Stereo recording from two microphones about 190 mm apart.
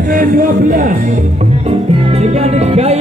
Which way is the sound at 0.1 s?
45° right (ahead or behind).